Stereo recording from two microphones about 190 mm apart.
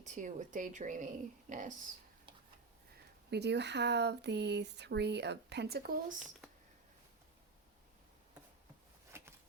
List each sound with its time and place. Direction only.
0.0 s speech: 40° right (ahead or behind)
3.2 s speech: 60° right (ahead or behind)
9.1 s a sound: 15° right (ahead or behind)